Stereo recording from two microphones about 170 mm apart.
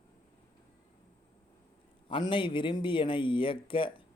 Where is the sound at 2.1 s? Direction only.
30° left (ahead or behind).